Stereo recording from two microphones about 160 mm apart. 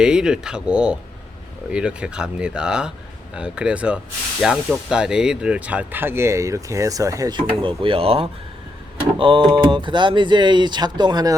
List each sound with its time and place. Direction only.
0.0 s speech: 5° right (ahead or behind); by 11.3 s 25° right (ahead or behind)